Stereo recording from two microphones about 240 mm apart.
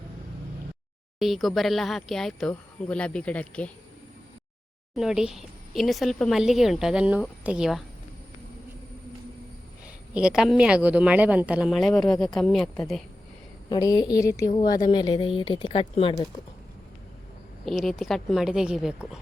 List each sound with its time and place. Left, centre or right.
1.2 s a woman's voice: centre
4.9 s a woman's voice: centre
9.8 s a woman's voice: centre
13.7 s a woman's voice: centre
17.7 s a woman's voice: centre